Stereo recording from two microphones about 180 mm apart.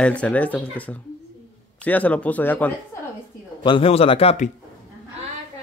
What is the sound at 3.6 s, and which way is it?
Speech, 30° left (ahead or behind).